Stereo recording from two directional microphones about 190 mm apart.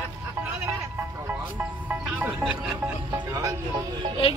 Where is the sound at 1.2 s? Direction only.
10° right (ahead or behind).